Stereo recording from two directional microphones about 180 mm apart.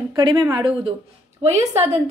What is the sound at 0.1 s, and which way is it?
Speech, 25° right (ahead or behind).